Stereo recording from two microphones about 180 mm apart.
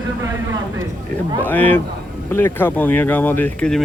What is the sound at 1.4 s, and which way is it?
Speech, 10° left (ahead or behind).